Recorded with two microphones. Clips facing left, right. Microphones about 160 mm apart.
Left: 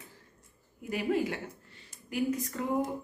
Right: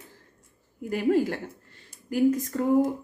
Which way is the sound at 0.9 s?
45° right (ahead or behind).